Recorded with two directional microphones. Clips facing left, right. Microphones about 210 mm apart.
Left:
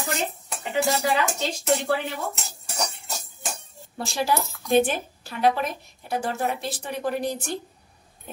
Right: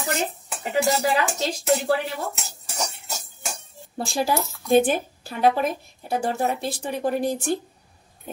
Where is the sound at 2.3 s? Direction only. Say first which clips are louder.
Even; centre (ahead or behind).